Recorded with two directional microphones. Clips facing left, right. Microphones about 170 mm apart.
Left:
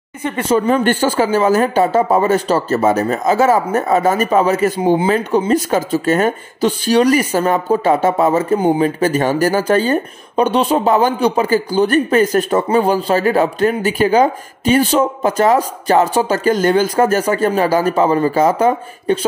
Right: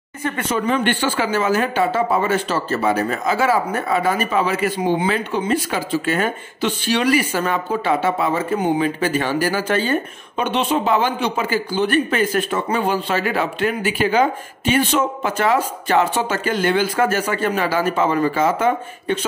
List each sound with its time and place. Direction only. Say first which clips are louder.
0.2 s speech: left 6 dB; 25° left (ahead or behind)
0.7 s speech: left 5 dB; 40° left (ahead or behind)